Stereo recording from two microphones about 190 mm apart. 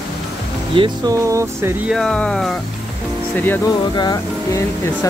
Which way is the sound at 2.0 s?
5° left (ahead or behind).